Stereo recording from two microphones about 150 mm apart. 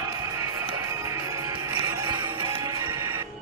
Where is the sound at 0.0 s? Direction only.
25° right (ahead or behind).